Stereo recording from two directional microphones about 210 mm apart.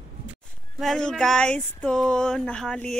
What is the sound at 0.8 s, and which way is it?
Speech, centre (ahead or behind).